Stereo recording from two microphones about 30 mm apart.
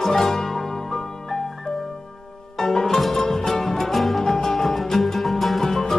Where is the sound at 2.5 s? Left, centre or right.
Centre.